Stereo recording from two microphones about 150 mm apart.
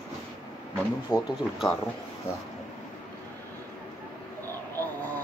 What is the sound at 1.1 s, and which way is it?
Speech, 5° right (ahead or behind).